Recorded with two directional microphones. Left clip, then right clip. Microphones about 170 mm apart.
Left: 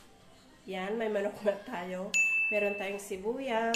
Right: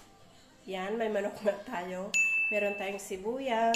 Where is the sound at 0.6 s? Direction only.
15° right (ahead or behind).